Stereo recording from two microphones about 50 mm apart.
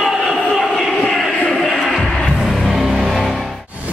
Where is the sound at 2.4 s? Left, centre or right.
Centre.